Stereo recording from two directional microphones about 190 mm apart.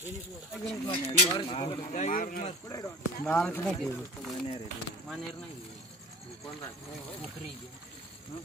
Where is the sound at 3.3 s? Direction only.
5° left (ahead or behind).